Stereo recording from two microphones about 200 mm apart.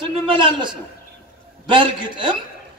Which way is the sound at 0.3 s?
25° right (ahead or behind).